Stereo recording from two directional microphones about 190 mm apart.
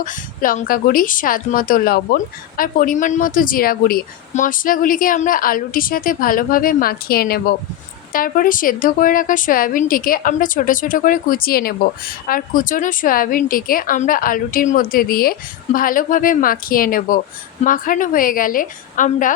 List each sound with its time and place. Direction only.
0.0 s a woman's voice: 45° left (ahead or behind)